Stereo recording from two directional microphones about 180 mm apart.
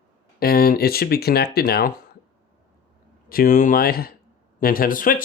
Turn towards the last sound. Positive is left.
turn(degrees=50)  # may be behind; listen again after turning